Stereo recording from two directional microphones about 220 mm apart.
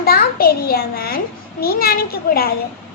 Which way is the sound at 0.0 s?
45° left (ahead or behind).